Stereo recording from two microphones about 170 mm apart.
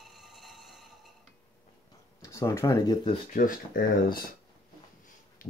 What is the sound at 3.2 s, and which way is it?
Speech, 55° left (ahead or behind).